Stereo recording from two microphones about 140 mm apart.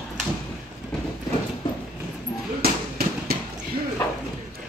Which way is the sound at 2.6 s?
90° right.